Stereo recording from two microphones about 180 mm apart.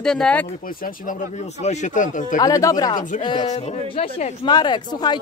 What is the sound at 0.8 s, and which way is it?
Speech, 45° left (ahead or behind).